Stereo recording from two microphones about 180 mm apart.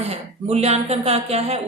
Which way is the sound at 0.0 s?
35° right (ahead or behind).